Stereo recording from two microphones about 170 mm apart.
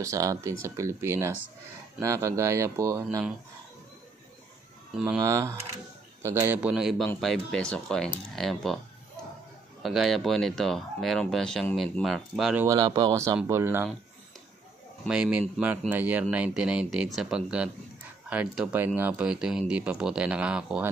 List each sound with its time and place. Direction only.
0.0 s speech: 20° right (ahead or behind)
5.0 s speech: 15° right (ahead or behind); by 8.7 s centre (ahead or behind)
9.8 s speech: centre (ahead or behind)
12.5 s speech: 20° right (ahead or behind)
15.0 s speech: 5° right (ahead or behind)